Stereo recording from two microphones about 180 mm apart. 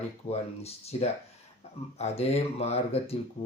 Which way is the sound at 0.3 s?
35° left (ahead or behind).